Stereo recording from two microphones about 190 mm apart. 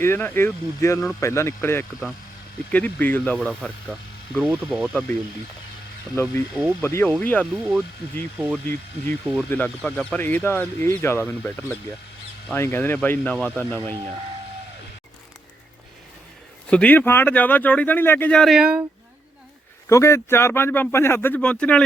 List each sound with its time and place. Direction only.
0.0 s speech: 10° left (ahead or behind)
6.2 s speech: 15° left (ahead or behind)
8.4 s speech: 5° right (ahead or behind)
8.6 s speech: 10° left (ahead or behind)
16.6 s speech: 5° left (ahead or behind)
19.9 s speech: 15° left (ahead or behind)